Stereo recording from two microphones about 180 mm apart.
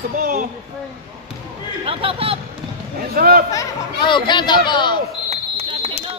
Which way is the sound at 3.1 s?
55° right (ahead or behind).